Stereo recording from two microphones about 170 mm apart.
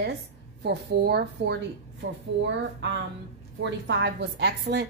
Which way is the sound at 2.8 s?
90° right.